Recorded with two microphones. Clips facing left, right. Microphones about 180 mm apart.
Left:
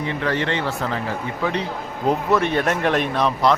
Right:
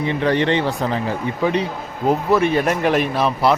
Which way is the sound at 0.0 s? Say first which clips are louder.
Right 5 dB; 20° right (ahead or behind).